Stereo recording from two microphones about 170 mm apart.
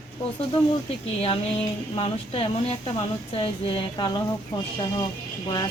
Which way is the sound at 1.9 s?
35° left (ahead or behind).